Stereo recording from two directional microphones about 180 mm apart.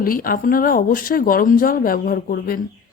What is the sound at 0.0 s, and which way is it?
Speech, 50° left (ahead or behind).